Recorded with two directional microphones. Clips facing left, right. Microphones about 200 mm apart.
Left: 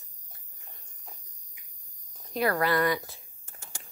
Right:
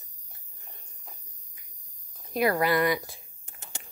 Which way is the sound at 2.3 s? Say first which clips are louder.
Right 2 dB; 15° right (ahead or behind).